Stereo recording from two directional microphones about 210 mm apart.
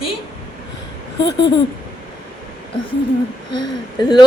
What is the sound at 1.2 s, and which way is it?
Speech, 55° left (ahead or behind).